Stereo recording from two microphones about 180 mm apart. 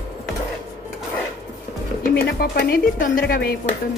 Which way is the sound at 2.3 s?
55° left (ahead or behind).